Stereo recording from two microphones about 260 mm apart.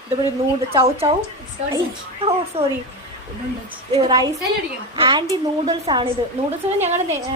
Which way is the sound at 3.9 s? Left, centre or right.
Centre.